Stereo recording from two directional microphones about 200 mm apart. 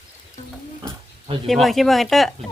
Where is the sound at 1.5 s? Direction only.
Centre (ahead or behind).